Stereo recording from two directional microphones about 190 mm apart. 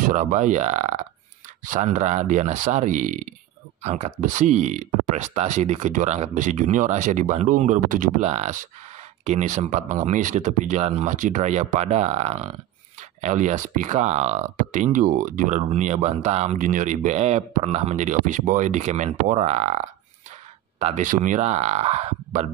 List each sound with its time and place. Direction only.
0.0 s speech: 40° right (ahead or behind)
20.8 s speech: 40° right (ahead or behind)